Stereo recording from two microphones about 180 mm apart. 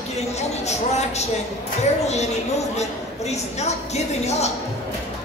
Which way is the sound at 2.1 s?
40° left (ahead or behind).